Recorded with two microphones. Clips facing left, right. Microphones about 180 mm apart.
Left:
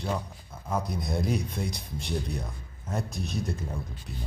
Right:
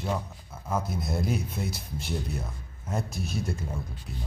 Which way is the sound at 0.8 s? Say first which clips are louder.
Even; centre (ahead or behind).